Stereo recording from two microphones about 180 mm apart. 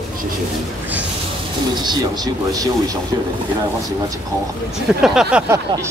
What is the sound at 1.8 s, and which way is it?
Speech, 20° right (ahead or behind).